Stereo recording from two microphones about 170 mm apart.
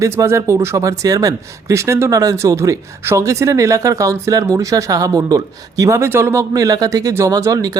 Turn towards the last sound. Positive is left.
turn(degrees=-20)  # may be behind; listen again after turning